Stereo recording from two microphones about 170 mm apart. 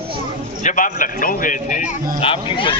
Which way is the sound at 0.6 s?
50° left (ahead or behind).